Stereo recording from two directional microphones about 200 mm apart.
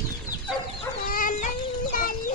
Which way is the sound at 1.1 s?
40° left (ahead or behind).